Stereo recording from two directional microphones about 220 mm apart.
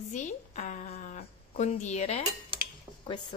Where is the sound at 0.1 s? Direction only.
35° left (ahead or behind).